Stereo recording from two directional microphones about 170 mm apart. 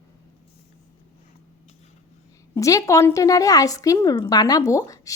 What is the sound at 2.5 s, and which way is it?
A woman's voice, 20° left (ahead or behind).